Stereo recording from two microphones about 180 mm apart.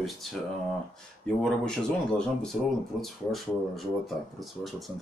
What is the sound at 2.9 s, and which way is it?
Speech, centre (ahead or behind).